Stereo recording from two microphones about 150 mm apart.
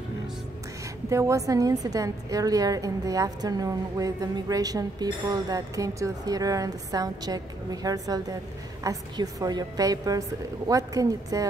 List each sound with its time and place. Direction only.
1.1 s a woman's voice: 20° right (ahead or behind)